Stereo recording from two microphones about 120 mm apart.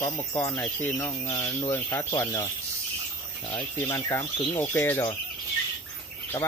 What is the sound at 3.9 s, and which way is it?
Speech, 20° left (ahead or behind).